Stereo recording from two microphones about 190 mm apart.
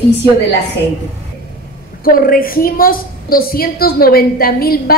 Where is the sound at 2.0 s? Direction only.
50° left (ahead or behind).